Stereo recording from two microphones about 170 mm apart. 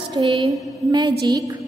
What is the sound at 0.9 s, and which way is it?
Speech, 25° right (ahead or behind).